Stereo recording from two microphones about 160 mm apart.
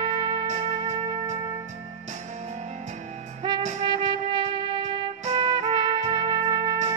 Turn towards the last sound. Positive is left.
turn(degrees=-20)  # may be behind; listen again after turning